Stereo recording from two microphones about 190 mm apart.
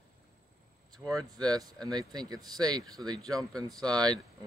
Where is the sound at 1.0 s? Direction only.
10° right (ahead or behind).